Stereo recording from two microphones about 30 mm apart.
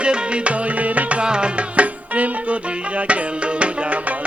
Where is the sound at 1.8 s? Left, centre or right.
Right.